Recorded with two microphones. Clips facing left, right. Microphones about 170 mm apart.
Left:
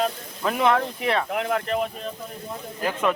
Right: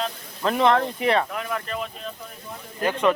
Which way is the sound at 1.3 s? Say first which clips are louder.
Left 5 dB; 60° left (ahead or behind).